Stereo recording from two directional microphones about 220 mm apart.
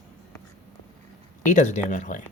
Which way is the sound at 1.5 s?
35° left (ahead or behind).